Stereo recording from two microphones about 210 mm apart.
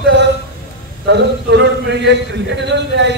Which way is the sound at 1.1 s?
55° right (ahead or behind).